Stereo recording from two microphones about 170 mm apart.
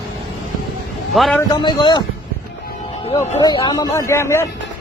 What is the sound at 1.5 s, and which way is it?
Speech, 25° left (ahead or behind).